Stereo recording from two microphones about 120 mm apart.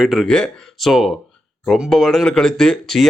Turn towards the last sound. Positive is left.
turn(degrees=5)  # may be behind; listen again after turning